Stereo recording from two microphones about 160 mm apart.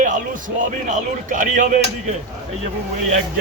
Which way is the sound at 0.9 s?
55° right (ahead or behind).